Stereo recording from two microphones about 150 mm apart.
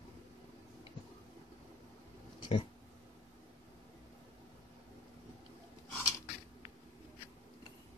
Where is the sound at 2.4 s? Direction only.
35° left (ahead or behind).